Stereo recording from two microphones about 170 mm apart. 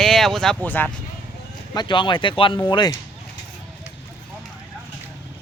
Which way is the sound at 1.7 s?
30° left (ahead or behind).